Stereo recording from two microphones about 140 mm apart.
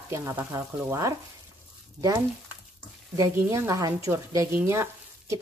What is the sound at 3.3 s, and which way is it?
A woman's voice, 20° right (ahead or behind).